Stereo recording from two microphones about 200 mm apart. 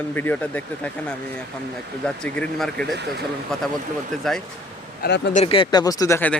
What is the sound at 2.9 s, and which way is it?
Speech, 60° right (ahead or behind).